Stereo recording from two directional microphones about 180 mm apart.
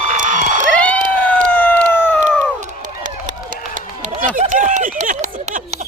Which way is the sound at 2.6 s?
45° right (ahead or behind).